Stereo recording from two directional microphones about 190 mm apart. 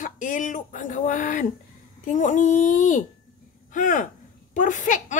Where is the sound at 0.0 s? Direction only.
45° left (ahead or behind).